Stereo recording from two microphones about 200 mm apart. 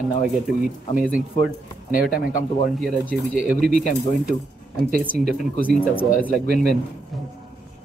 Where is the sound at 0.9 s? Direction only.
5° right (ahead or behind).